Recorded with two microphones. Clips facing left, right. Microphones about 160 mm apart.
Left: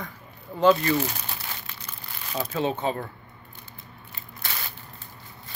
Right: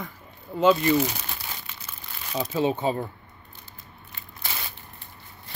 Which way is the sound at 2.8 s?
10° right (ahead or behind).